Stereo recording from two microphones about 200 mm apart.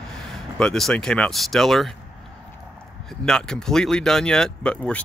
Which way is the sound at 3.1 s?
5° left (ahead or behind).